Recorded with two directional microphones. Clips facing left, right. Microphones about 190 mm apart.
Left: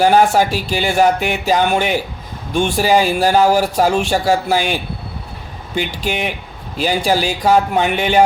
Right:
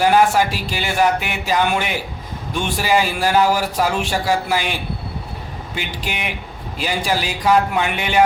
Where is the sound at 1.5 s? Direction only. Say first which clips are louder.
Left 3 dB; 40° left (ahead or behind).